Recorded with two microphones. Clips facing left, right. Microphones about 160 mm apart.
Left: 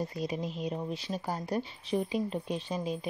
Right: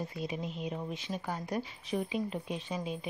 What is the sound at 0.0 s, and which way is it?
Speech, 40° left (ahead or behind).